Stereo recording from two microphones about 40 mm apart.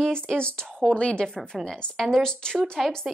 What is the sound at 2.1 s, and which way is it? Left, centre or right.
Speech, centre.